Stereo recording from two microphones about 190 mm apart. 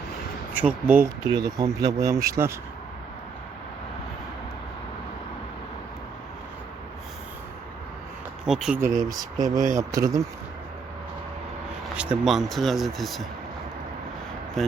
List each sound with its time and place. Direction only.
0.5 s speech: 10° right (ahead or behind)
8.4 s speech: 5° right (ahead or behind)
8.8 s speech: 15° right (ahead or behind)
11.9 s speech: 5° right (ahead or behind)